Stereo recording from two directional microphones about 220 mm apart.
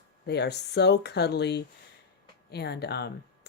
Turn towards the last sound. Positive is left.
turn(degrees=50)  # may be behind; listen again after turning